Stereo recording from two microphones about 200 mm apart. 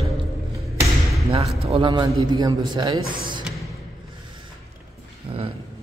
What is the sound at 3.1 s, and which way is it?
Speech, 45° right (ahead or behind).